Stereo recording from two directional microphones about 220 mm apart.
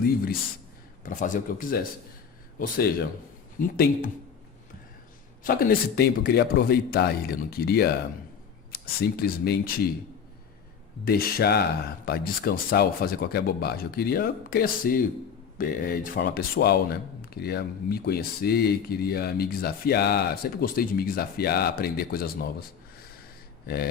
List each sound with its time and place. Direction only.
1.0 s speech: 35° left (ahead or behind)
5.4 s speech: 40° left (ahead or behind)
11.0 s speech: 45° left (ahead or behind)
23.6 s a sound: 45° left (ahead or behind)